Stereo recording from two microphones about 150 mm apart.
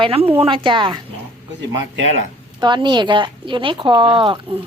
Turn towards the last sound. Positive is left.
turn(degrees=-35)  # may be behind; listen again after turning